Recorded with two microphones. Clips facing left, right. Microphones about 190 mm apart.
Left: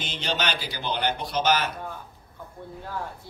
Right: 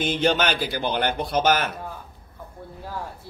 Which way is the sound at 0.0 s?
55° right (ahead or behind).